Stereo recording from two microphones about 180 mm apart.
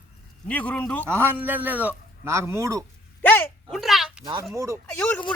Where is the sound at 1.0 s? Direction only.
15° right (ahead or behind).